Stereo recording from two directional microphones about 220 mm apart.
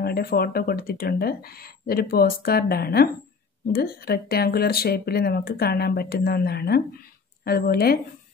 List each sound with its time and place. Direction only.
0.0 s speech: 45° left (ahead or behind)